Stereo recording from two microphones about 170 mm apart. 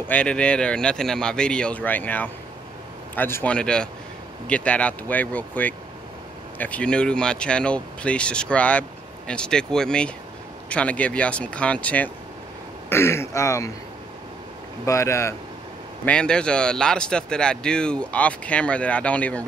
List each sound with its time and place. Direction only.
0.1 s speech: 5° left (ahead or behind)
14.9 s speech: 15° left (ahead or behind)
16.1 s speech: 5° left (ahead or behind)